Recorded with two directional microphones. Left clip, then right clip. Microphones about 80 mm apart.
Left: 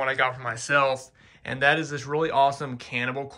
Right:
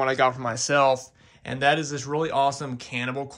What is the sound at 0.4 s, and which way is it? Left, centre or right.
Speech, right.